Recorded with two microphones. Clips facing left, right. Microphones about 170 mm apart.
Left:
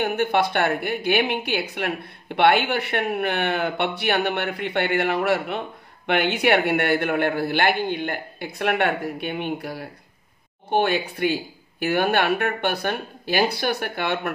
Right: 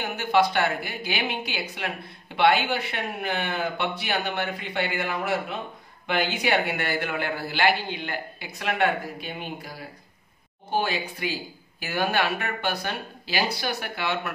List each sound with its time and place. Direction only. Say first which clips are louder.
0.0 s a woman's voice: left 2 dB; 55° left (ahead or behind)